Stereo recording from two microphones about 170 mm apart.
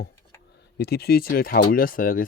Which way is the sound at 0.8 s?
70° left (ahead or behind).